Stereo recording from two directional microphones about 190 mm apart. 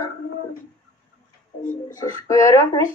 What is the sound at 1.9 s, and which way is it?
A child's voice, 15° left (ahead or behind).